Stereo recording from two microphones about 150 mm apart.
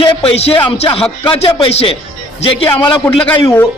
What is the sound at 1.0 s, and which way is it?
Speech, 5° left (ahead or behind).